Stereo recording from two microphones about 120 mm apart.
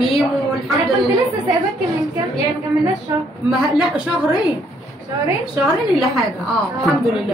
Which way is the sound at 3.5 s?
5° right (ahead or behind).